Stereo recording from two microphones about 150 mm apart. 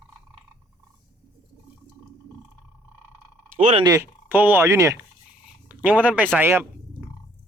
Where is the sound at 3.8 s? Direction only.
20° right (ahead or behind).